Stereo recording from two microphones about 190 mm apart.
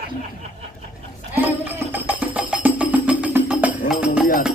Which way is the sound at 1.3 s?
10° right (ahead or behind).